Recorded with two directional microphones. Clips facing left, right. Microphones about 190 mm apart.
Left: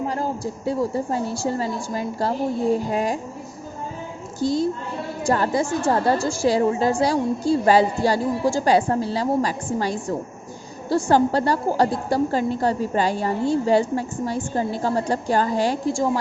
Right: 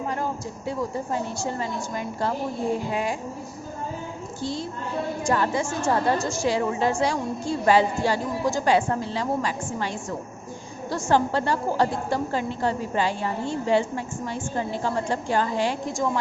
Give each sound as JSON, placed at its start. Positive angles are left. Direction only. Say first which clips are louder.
{"t": 0.1, "sound": "a woman's voice", "louder": "left 3 dB", "side_deg": 35}
{"t": 4.4, "sound": "a woman's voice", "louder": "left 10 dB", "side_deg": 40}